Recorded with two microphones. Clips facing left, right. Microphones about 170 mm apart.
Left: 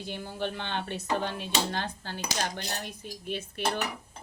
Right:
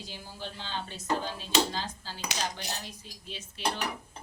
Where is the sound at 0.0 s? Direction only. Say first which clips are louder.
Left 8 dB; 60° left (ahead or behind).